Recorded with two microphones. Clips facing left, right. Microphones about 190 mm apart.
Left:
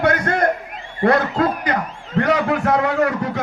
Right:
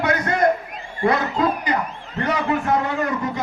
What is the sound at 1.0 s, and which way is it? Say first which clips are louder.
A man's voice: left 3 dB; 65° left (ahead or behind).